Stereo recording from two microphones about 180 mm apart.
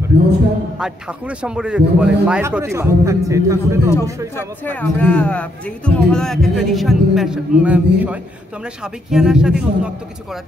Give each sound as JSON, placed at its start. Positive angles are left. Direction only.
{"t": 0.1, "sound": "a man's voice", "side_deg": -70}
{"t": 0.7, "sound": "a man's voice", "side_deg": -5}
{"t": 4.4, "sound": "speech", "side_deg": 10}